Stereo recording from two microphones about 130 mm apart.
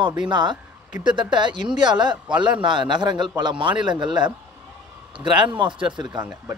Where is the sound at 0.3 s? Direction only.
35° right (ahead or behind).